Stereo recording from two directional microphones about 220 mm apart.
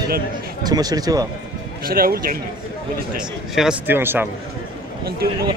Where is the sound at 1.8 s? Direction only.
40° right (ahead or behind).